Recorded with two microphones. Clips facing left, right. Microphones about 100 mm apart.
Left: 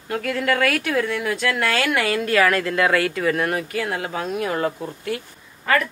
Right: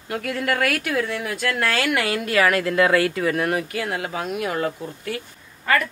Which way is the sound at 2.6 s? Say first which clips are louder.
Right 1 dB; 35° right (ahead or behind).